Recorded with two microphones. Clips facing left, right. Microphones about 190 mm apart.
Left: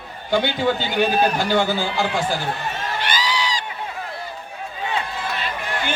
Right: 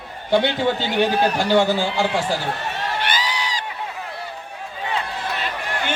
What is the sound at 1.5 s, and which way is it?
Speech, 25° right (ahead or behind).